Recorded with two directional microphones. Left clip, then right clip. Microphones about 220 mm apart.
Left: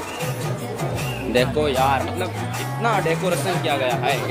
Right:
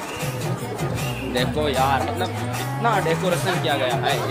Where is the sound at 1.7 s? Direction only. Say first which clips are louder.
Left 1 dB; centre (ahead or behind).